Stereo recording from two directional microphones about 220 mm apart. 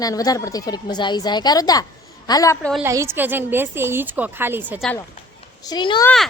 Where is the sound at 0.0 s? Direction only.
15° left (ahead or behind).